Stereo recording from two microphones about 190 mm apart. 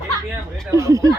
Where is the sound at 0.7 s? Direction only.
15° right (ahead or behind).